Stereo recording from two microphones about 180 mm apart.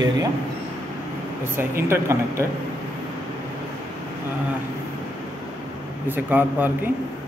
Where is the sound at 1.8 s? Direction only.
15° right (ahead or behind).